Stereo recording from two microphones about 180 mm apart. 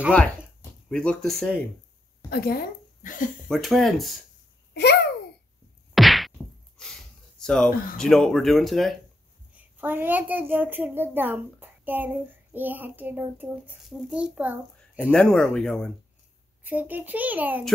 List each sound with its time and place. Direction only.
0.8 s speech: 5° left (ahead or behind)
2.2 s a woman's voice: 60° left (ahead or behind)
3.4 s speech: centre (ahead or behind)
5.9 s whack: centre (ahead or behind)
9.8 s a child's voice: 10° right (ahead or behind)
15.0 s speech: 5° left (ahead or behind)
16.6 s a child's voice: 10° right (ahead or behind)